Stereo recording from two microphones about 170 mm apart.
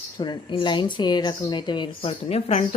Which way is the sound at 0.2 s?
30° left (ahead or behind).